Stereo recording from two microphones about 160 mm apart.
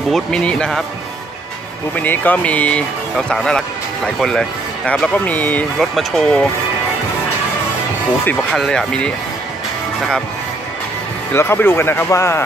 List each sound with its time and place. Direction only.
0.1 s speech: 5° left (ahead or behind)
2.0 s speech: 10° left (ahead or behind)
8.3 s speech: 5° left (ahead or behind)
11.3 s speech: 15° left (ahead or behind)